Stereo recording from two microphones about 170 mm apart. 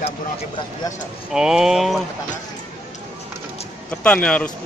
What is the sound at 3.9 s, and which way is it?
Speech, 5° left (ahead or behind).